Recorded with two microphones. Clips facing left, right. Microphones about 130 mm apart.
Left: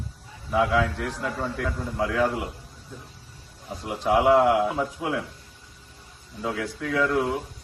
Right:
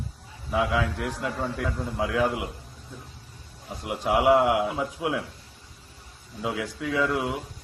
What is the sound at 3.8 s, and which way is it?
A man's voice, 5° right (ahead or behind).